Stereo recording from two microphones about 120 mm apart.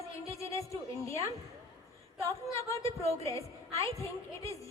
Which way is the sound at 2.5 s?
25° left (ahead or behind).